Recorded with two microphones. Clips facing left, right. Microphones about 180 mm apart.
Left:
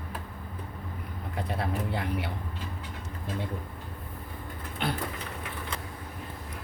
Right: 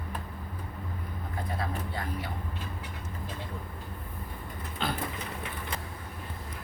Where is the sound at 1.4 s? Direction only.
70° left (ahead or behind).